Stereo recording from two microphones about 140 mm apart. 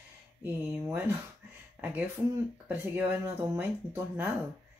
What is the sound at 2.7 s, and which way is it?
Speech, 15° right (ahead or behind).